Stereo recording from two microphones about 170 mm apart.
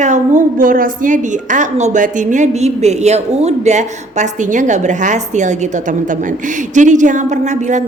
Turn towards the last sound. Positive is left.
turn(degrees=-45)  # may be behind; listen again after turning